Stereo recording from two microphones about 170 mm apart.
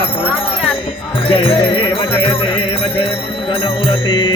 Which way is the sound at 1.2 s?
30° left (ahead or behind).